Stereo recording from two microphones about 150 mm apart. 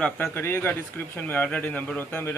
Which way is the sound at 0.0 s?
15° left (ahead or behind).